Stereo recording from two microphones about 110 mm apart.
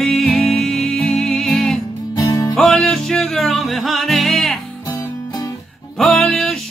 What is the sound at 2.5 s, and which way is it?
Music, 5° left (ahead or behind).